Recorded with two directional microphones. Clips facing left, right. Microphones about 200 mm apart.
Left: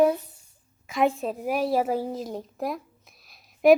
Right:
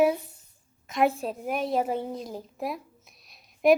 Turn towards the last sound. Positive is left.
turn(degrees=0)  # may be behind; listen again after turning